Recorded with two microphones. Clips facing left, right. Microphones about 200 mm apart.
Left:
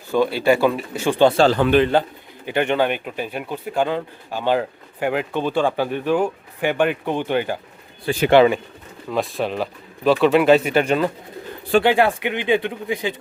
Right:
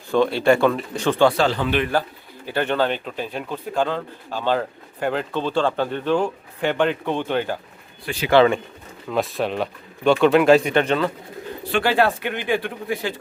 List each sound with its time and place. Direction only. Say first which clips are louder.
0.1 s speech: even; 5° left (ahead or behind)
1.2 s a man's voice: left 3 dB; 25° left (ahead or behind)
1.5 s a man's voice: left 6 dB; 50° left (ahead or behind)
1.8 s a man's voice: left 5 dB; 25° left (ahead or behind)
8.1 s speech: left 7 dB; 30° left (ahead or behind)
9.0 s speech: even; centre (ahead or behind); by 13.1 s 15° left (ahead or behind)